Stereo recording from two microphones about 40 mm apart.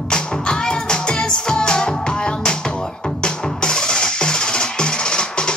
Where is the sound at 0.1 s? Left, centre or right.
Left.